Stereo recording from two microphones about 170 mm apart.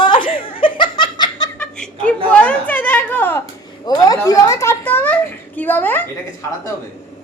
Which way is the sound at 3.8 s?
20° left (ahead or behind).